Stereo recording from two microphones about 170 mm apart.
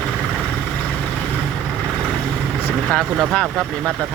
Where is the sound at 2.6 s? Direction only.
5° left (ahead or behind).